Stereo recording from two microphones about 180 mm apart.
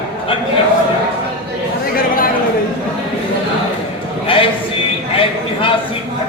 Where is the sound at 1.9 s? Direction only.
55° left (ahead or behind).